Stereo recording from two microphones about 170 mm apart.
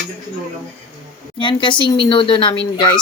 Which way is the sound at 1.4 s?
30° left (ahead or behind).